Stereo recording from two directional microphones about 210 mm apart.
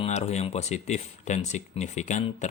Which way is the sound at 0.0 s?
30° left (ahead or behind).